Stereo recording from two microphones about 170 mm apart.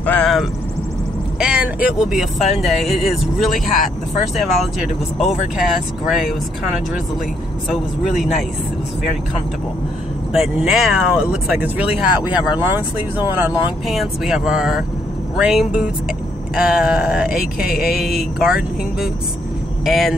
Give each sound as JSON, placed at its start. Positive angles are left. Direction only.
{"t": 0.0, "sound": "vehicle", "side_deg": 5}
{"t": 1.4, "sound": "speech", "side_deg": -5}
{"t": 7.7, "sound": "speech", "side_deg": 0}
{"t": 10.3, "sound": "speech", "side_deg": 0}
{"t": 12.2, "sound": "speech", "side_deg": 25}
{"t": 12.4, "sound": "speech", "side_deg": -10}